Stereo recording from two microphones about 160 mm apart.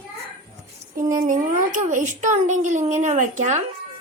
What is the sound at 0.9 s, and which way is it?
A child's voice, 60° right (ahead or behind).